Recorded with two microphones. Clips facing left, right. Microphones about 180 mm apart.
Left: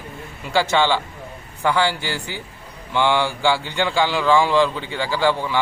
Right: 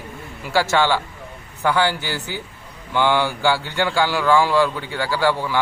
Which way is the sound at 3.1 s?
10° right (ahead or behind).